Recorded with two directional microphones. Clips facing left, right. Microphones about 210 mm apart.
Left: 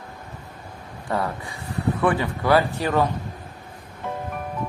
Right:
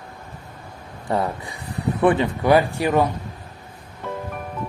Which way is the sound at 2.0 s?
20° right (ahead or behind).